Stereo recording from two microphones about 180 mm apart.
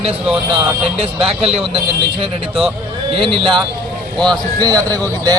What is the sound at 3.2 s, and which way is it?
Speech, 30° right (ahead or behind).